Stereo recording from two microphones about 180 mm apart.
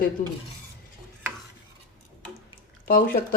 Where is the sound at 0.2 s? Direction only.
45° left (ahead or behind).